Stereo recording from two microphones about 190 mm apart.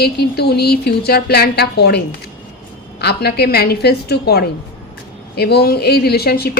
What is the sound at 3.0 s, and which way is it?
Speech, 60° left (ahead or behind).